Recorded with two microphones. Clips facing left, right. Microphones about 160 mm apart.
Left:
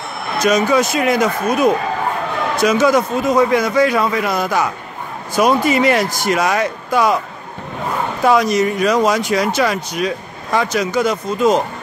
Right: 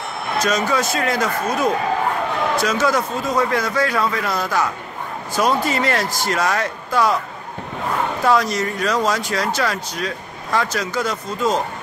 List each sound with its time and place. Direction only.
0.4 s speech: 15° left (ahead or behind)
8.2 s speech: 15° left (ahead or behind)